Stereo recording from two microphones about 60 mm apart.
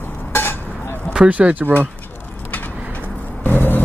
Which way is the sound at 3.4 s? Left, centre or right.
Left.